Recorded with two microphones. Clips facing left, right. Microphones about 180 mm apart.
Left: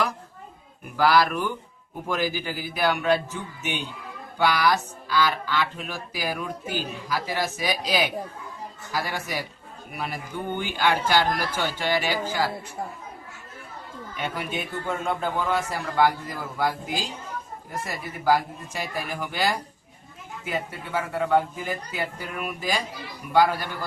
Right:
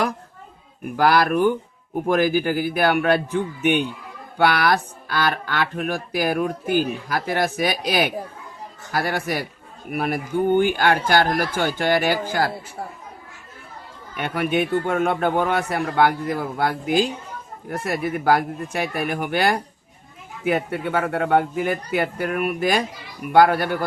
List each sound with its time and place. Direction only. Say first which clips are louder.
0.9 s a man's voice: right 3 dB; 55° right (ahead or behind)
14.2 s speech: right 9 dB; 60° right (ahead or behind)